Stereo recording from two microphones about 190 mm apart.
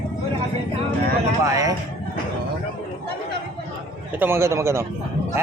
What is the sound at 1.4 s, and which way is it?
Speech, 15° right (ahead or behind).